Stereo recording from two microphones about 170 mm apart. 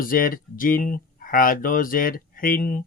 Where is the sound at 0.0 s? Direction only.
55° left (ahead or behind).